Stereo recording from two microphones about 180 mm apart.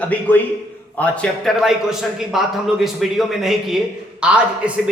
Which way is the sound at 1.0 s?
5° left (ahead or behind).